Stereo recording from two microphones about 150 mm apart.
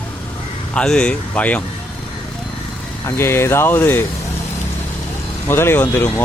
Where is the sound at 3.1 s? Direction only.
15° left (ahead or behind).